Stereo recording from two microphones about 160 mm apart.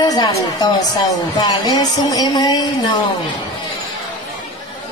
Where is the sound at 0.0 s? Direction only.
25° left (ahead or behind).